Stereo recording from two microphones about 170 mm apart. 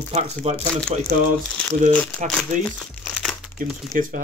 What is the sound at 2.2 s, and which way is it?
Speech, 45° right (ahead or behind).